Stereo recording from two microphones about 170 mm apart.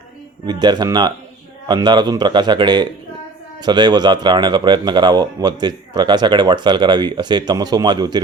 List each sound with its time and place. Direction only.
0.4 s speech: 25° right (ahead or behind)